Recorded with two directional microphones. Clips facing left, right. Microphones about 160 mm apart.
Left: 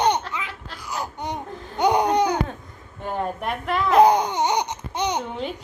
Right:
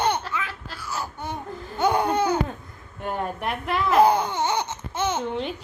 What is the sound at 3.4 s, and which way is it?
Speech, centre (ahead or behind).